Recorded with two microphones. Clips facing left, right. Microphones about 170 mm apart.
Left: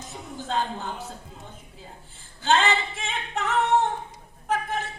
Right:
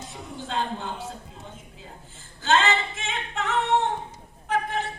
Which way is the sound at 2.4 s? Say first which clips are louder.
Even; 35° left (ahead or behind).